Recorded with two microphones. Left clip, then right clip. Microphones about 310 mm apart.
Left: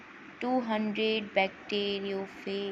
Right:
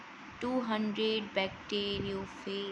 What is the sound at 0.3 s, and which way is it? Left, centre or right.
Mantra, centre.